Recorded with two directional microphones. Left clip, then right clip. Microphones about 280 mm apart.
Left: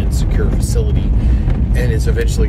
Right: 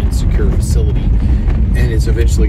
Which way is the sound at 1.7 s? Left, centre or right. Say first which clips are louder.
Even; centre.